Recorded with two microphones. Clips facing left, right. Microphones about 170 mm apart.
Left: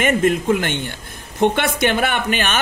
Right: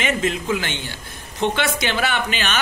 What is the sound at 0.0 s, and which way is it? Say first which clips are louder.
A man's voice: left 6 dB; 50° left (ahead or behind).